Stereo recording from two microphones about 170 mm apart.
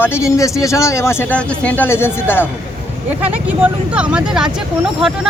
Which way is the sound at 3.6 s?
5° right (ahead or behind).